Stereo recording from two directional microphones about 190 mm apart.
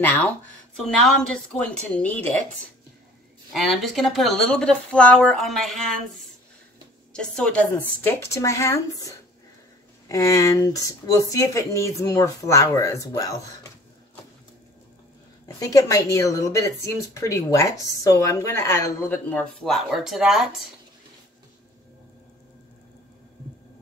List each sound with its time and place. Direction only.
0.0 s a woman's voice: 10° left (ahead or behind)
3.5 s speech: centre (ahead or behind)
7.1 s a woman's voice: 5° left (ahead or behind)
10.0 s a woman's voice: 15° left (ahead or behind)
15.4 s a woman's voice: 15° left (ahead or behind); by 20.4 s centre (ahead or behind)